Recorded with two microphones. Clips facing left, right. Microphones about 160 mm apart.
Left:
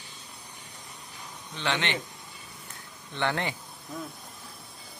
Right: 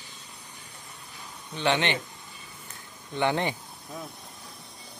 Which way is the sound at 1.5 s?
15° right (ahead or behind).